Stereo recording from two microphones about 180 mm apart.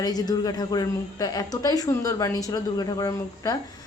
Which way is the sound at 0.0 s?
20° left (ahead or behind).